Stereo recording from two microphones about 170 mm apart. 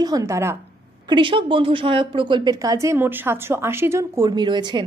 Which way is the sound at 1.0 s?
30° right (ahead or behind).